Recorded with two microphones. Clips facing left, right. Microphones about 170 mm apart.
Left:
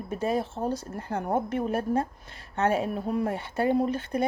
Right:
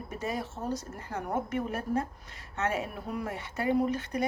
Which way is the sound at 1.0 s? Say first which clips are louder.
Left 6 dB; 60° left (ahead or behind).